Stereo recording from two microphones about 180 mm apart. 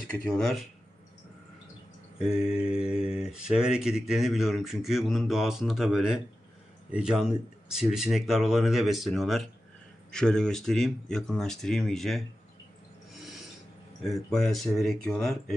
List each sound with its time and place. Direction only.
0.1 s mantra: 5° left (ahead or behind)
2.2 s mantra: 5° right (ahead or behind)
14.0 s mantra: centre (ahead or behind)